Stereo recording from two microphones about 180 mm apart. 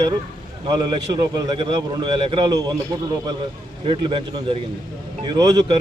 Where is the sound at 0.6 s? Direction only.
25° right (ahead or behind).